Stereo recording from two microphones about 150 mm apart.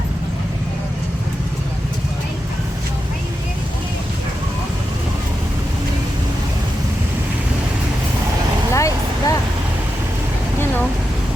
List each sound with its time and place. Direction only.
8.7 s vehicle: 20° left (ahead or behind)